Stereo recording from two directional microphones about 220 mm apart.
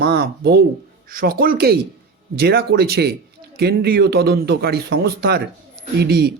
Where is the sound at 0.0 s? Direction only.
45° right (ahead or behind).